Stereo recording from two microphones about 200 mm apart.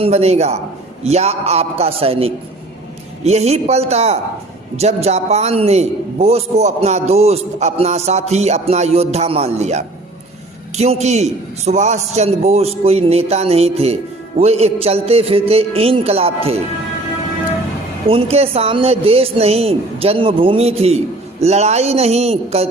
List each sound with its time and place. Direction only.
0.0 s a man's voice: 30° right (ahead or behind)
18.1 s a man's voice: 30° right (ahead or behind)